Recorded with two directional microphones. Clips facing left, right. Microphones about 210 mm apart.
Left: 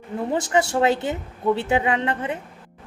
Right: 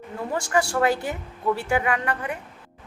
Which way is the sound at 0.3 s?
20° left (ahead or behind).